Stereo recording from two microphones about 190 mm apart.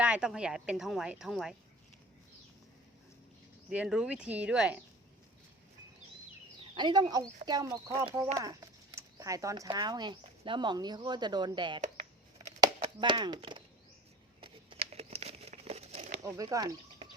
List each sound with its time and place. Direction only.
0.0 s a woman's voice: 5° right (ahead or behind)
3.7 s a woman's voice: 5° right (ahead or behind)
6.7 s speech: 25° right (ahead or behind)
12.8 s speech: 25° right (ahead or behind)
14.4 s crumpling: 30° right (ahead or behind)
16.2 s speech: 20° right (ahead or behind)